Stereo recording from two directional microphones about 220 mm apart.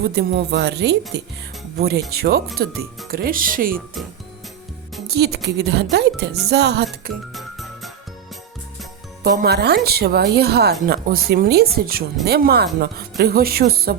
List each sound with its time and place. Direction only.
0.0 s speech: 50° right (ahead or behind)
5.0 s speech: 45° right (ahead or behind)
7.3 s music: centre (ahead or behind)
9.2 s speech: 45° right (ahead or behind)